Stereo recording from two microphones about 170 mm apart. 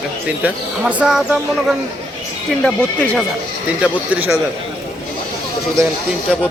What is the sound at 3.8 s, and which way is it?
Speech, 5° right (ahead or behind).